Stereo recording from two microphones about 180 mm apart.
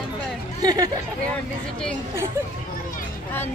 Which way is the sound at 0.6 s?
20° right (ahead or behind).